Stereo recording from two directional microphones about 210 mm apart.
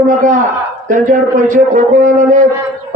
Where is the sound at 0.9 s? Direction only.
40° right (ahead or behind).